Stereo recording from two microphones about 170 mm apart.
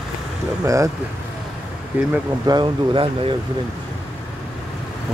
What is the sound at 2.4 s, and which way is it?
Speech, 25° right (ahead or behind).